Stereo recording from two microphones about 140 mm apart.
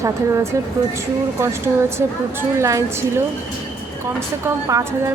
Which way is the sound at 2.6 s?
20° right (ahead or behind).